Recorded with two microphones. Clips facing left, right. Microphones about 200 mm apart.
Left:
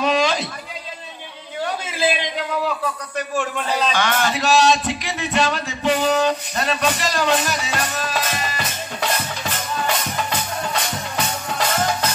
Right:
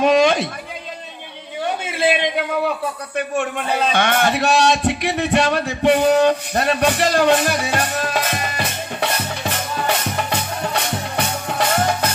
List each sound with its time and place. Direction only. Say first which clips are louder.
0.0 s a sound: right 5 dB; 55° right (ahead or behind)
1.9 s speech: right 5 dB; 60° right (ahead or behind)
10.3 s music: right 2 dB; 60° right (ahead or behind)